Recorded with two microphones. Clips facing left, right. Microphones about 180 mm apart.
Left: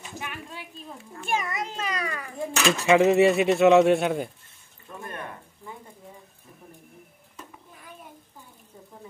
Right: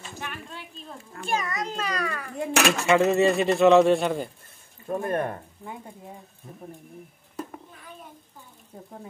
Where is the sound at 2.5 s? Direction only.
65° right (ahead or behind).